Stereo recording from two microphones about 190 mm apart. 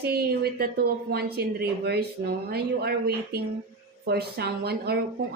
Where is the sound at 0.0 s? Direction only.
55° right (ahead or behind).